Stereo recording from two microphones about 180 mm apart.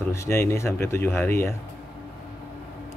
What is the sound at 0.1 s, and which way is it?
A man's voice, 15° left (ahead or behind).